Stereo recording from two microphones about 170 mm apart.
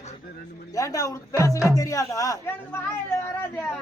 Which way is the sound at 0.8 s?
20° left (ahead or behind).